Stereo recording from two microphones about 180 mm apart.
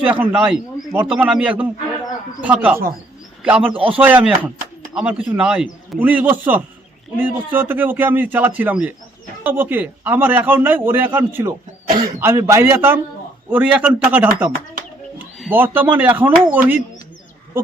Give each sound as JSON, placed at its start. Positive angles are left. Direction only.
{"t": 0.0, "sound": "a man's voice", "side_deg": -10}
{"t": 3.7, "sound": "a man's voice", "side_deg": -30}
{"t": 4.0, "sound": "a man's voice", "side_deg": -10}
{"t": 15.4, "sound": "a man's voice", "side_deg": -10}